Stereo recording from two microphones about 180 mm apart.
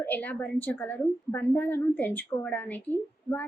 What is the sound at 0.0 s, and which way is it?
A woman's voice, 10° left (ahead or behind).